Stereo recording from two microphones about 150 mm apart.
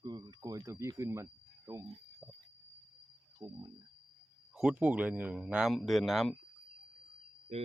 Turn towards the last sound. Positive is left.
turn(degrees=-45)  # may be behind; listen again after turning